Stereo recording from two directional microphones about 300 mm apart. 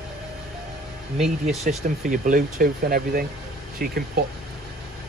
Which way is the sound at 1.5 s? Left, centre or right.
Right.